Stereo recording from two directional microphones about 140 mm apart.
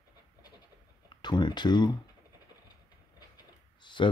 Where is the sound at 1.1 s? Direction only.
30° left (ahead or behind).